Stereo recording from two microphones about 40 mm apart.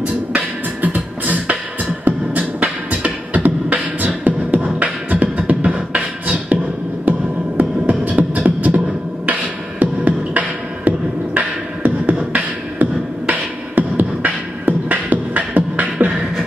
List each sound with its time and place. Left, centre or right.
0.9 s beatboxing: right
7.1 s music: right
8.0 s beatboxing: right